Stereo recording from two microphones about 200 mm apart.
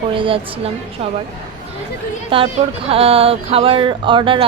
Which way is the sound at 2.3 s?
25° right (ahead or behind).